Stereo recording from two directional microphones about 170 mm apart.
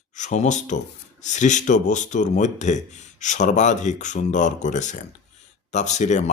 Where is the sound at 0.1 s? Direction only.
45° left (ahead or behind).